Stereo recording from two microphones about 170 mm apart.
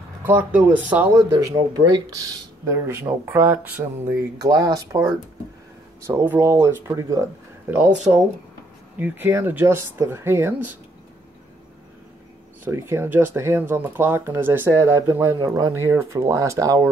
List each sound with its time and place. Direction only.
0.2 s speech: 10° right (ahead or behind)
1.3 s speech: 20° right (ahead or behind)
8.9 s speech: 10° right (ahead or behind)
12.7 s speech: 15° right (ahead or behind)